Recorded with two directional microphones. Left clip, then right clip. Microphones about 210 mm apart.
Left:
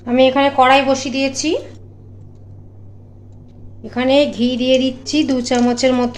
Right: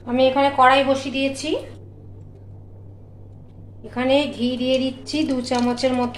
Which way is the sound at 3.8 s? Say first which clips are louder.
Left 5 dB; 40° left (ahead or behind).